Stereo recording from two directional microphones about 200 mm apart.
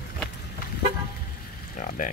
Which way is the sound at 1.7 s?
40° left (ahead or behind).